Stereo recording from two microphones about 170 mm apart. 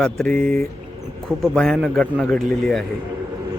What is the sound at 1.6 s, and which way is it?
Speech, centre (ahead or behind).